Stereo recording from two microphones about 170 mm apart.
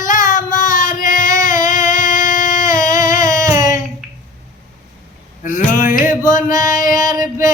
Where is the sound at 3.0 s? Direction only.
50° left (ahead or behind).